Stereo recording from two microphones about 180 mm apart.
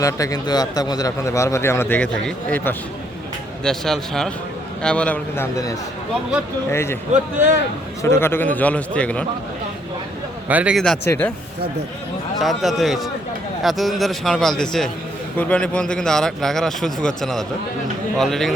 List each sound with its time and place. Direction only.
0.0 s a man's voice: 20° left (ahead or behind)
8.0 s a man's voice: 15° left (ahead or behind)
10.5 s a man's voice: 5° right (ahead or behind)
11.0 s a man's voice: 15° left (ahead or behind)
12.4 s a man's voice: centre (ahead or behind)